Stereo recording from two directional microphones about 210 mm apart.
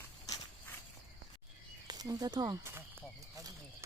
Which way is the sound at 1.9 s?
15° right (ahead or behind).